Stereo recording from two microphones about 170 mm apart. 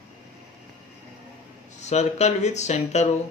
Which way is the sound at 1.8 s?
40° left (ahead or behind).